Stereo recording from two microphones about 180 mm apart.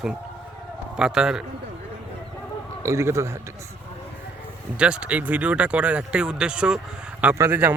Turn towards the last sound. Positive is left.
turn(degrees=-10)  # may be behind; listen again after turning